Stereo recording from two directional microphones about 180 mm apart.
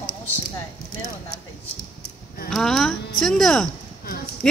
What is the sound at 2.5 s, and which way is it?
Speech, 5° left (ahead or behind).